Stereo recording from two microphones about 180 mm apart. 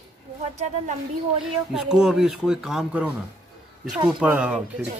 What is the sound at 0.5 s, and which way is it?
Speech, 40° right (ahead or behind).